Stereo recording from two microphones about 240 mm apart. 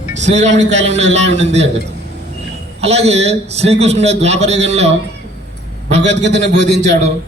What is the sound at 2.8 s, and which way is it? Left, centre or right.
A man's voice, right.